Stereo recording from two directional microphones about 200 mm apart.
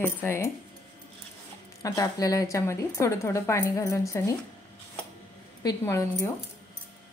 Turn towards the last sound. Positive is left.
turn(degrees=15)  # may be behind; listen again after turning